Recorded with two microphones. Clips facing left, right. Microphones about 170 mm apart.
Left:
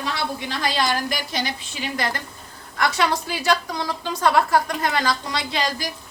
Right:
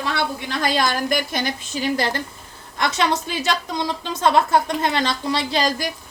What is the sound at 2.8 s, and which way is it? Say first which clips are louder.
A woman's voice: right 1 dB; 20° right (ahead or behind).